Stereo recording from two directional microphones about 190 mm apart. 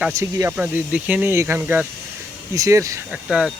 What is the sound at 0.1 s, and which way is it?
Speech, 15° right (ahead or behind).